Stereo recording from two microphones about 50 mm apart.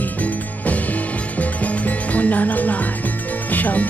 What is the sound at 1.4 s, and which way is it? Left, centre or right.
Music, left.